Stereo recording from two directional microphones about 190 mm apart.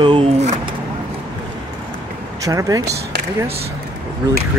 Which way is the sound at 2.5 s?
20° right (ahead or behind).